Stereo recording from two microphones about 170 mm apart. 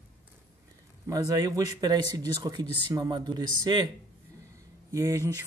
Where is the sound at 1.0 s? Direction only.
20° right (ahead or behind).